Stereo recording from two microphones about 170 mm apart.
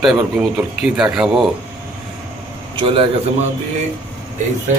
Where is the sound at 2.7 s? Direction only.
30° right (ahead or behind).